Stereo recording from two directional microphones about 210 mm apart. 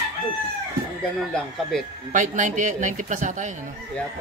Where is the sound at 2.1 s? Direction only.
35° right (ahead or behind).